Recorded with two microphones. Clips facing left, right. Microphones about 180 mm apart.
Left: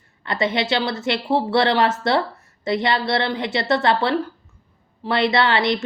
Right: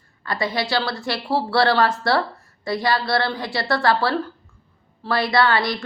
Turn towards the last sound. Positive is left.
turn(degrees=20)  # may be behind; listen again after turning